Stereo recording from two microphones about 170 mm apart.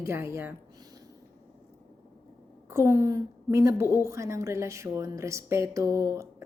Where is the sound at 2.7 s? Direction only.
15° right (ahead or behind).